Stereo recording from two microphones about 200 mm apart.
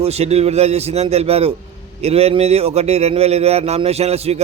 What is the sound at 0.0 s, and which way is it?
Speech, 30° right (ahead or behind).